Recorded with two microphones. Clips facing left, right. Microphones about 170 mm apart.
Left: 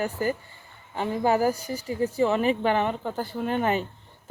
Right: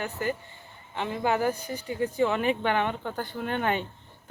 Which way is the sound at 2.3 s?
35° left (ahead or behind).